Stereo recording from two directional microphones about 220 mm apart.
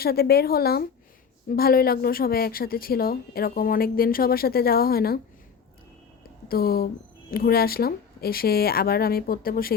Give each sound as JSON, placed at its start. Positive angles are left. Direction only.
{"t": 0.0, "sound": "speech", "side_deg": 45}
{"t": 6.5, "sound": "speech", "side_deg": 45}